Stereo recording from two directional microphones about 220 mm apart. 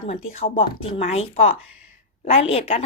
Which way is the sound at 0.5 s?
25° left (ahead or behind).